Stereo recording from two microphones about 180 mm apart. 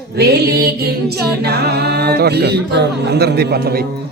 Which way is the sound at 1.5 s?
65° right (ahead or behind).